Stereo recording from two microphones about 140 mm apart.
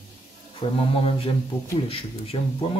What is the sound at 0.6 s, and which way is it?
Speech, 40° left (ahead or behind).